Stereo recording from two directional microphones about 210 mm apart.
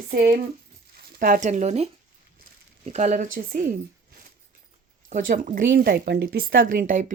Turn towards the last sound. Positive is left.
turn(degrees=-40)  # may be behind; listen again after turning